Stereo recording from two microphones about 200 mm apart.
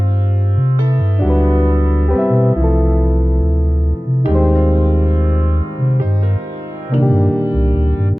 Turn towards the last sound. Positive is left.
turn(degrees=-5)  # may be behind; listen again after turning